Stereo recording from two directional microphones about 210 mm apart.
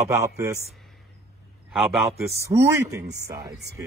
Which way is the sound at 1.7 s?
Centre (ahead or behind).